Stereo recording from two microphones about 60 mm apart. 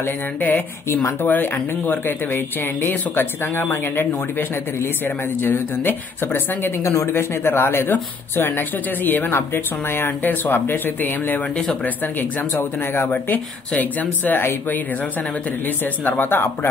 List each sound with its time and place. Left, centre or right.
0.0 s speech: left
6.8 s speech: left
7.1 s speech: left
15.6 s speech: left